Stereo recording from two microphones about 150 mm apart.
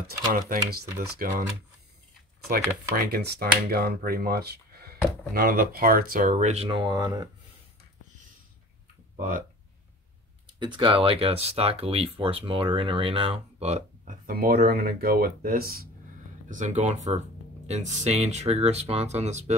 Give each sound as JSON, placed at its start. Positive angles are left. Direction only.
{"t": 0.0, "sound": "speech", "side_deg": -85}
{"t": 3.0, "sound": "speech", "side_deg": -90}
{"t": 10.6, "sound": "speech", "side_deg": -35}
{"t": 14.2, "sound": "speech", "side_deg": -80}
{"t": 16.4, "sound": "speech", "side_deg": -55}